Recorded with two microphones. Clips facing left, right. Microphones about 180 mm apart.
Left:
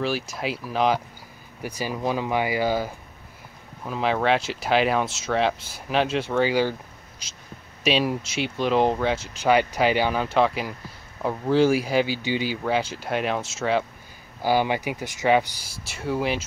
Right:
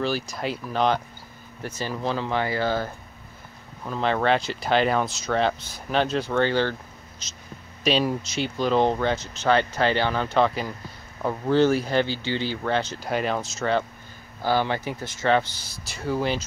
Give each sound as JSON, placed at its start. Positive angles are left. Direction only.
{"t": 0.0, "sound": "speech", "side_deg": 5}
{"t": 15.9, "sound": "speech", "side_deg": 5}